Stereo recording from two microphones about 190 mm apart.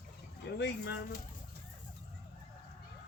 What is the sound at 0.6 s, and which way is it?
Bird, 60° left (ahead or behind).